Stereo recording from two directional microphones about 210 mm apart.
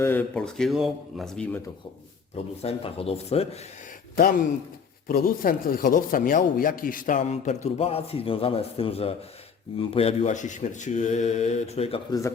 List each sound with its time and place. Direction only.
0.0 s speech: 10° left (ahead or behind)
2.3 s speech: 30° left (ahead or behind)
4.1 s speech: 45° left (ahead or behind)